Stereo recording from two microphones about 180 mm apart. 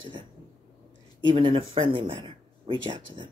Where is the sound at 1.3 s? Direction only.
30° right (ahead or behind).